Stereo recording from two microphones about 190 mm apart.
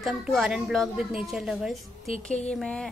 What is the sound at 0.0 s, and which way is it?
A woman's voice, centre (ahead or behind).